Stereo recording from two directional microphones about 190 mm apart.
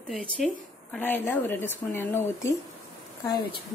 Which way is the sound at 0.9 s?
10° left (ahead or behind).